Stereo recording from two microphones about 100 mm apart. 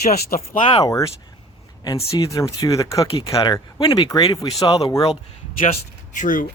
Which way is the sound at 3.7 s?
55° left (ahead or behind).